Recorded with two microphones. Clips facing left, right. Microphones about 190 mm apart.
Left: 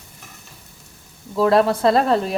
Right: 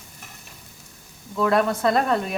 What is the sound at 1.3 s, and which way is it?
Speech, 30° left (ahead or behind).